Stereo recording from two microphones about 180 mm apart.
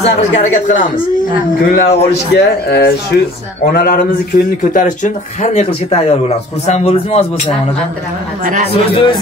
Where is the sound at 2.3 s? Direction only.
65° left (ahead or behind); by 7.5 s 35° left (ahead or behind).